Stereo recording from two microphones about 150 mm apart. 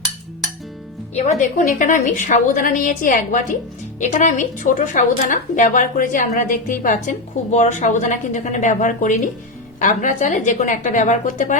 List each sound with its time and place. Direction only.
1.1 s a woman's voice: 55° left (ahead or behind)